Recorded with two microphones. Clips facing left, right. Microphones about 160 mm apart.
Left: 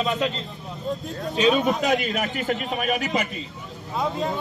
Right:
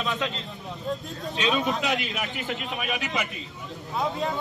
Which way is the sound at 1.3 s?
40° left (ahead or behind).